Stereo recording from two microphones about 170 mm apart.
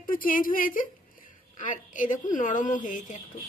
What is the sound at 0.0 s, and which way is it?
Speech, 55° left (ahead or behind).